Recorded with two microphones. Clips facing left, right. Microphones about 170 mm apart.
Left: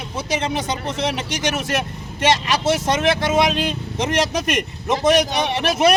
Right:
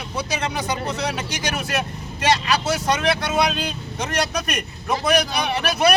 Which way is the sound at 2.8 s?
25° left (ahead or behind).